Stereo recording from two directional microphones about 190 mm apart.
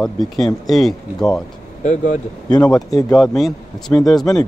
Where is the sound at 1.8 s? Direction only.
40° left (ahead or behind).